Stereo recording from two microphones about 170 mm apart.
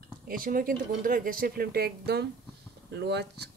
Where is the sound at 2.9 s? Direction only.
75° right (ahead or behind).